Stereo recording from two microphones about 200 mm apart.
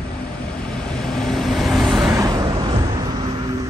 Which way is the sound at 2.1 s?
20° right (ahead or behind).